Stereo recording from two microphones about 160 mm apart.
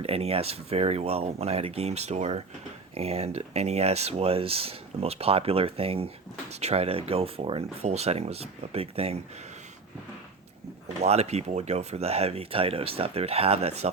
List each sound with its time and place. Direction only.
0.0 s speech: 40° right (ahead or behind)
10.8 s speech: 40° right (ahead or behind)